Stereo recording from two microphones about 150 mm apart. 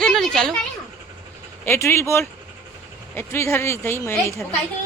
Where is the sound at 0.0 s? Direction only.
Centre (ahead or behind).